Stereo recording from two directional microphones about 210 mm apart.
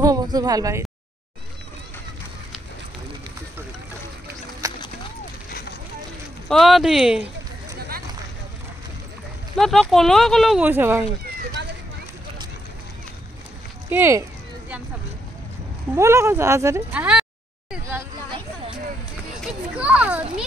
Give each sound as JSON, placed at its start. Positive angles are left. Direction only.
{"t": 0.0, "sound": "speech", "side_deg": -15}
{"t": 4.6, "sound": "a sound", "side_deg": -15}
{"t": 6.5, "sound": "speech", "side_deg": 0}
{"t": 9.6, "sound": "speech", "side_deg": 0}
{"t": 13.8, "sound": "speech", "side_deg": -10}
{"t": 15.9, "sound": "speech", "side_deg": -15}
{"t": 19.7, "sound": "children playing", "side_deg": -5}